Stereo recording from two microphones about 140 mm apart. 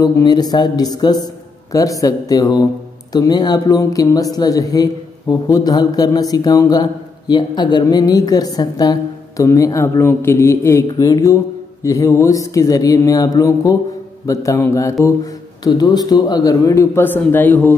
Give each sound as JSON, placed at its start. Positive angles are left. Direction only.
{"t": 0.0, "sound": "a man's voice", "side_deg": 30}